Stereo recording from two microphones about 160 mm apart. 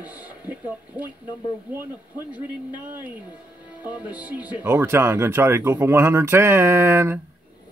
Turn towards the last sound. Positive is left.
turn(degrees=-15)  # may be behind; listen again after turning